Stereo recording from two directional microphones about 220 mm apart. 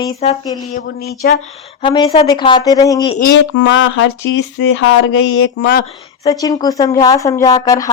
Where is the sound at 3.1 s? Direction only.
50° left (ahead or behind).